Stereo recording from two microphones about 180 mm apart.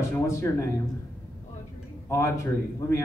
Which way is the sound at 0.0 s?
15° left (ahead or behind).